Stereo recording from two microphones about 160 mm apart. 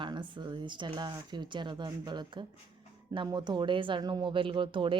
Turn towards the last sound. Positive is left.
turn(degrees=-30)  # may be behind; listen again after turning